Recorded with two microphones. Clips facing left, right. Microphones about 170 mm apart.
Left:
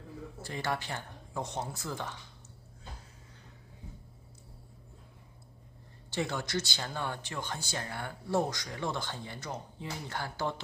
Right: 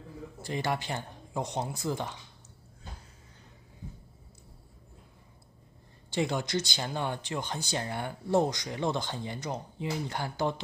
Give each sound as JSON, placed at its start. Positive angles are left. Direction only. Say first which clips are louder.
{"t": 0.4, "sound": "speech", "louder": "right 3 dB", "side_deg": -15}
{"t": 6.0, "sound": "speech", "louder": "right 4 dB", "side_deg": -15}